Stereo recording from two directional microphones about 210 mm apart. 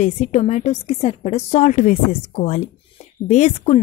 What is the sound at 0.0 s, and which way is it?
A woman's voice, 35° left (ahead or behind).